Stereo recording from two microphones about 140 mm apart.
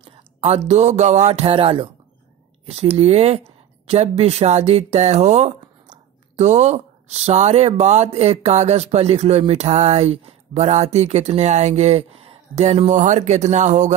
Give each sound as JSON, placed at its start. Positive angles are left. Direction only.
{"t": 0.0, "sound": "speech", "side_deg": -45}